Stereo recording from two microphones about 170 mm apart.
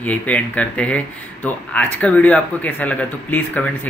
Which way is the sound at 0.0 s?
10° left (ahead or behind).